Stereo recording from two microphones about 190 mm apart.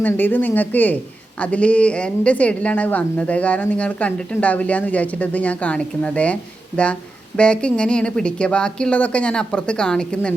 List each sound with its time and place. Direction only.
0.0 s a woman's voice: 10° left (ahead or behind)